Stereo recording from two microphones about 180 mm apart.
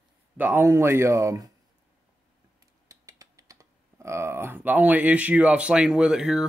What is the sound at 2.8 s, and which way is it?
Scissors, 20° right (ahead or behind).